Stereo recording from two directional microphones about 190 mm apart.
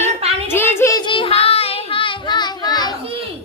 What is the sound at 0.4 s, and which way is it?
Child singing, 10° left (ahead or behind).